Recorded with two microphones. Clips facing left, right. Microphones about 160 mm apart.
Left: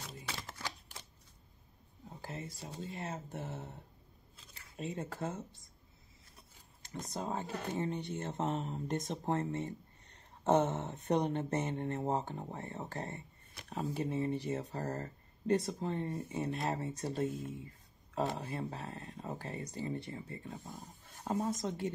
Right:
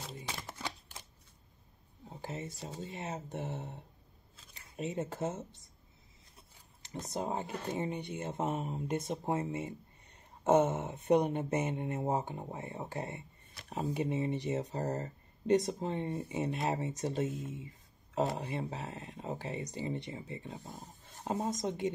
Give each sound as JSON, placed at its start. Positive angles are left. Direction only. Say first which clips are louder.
{"t": 0.3, "sound": "a sound", "louder": "right 1 dB", "side_deg": -20}
{"t": 2.2, "sound": "speech", "louder": "right 3 dB", "side_deg": -20}
{"t": 7.2, "sound": "speech", "louder": "right 2 dB", "side_deg": -15}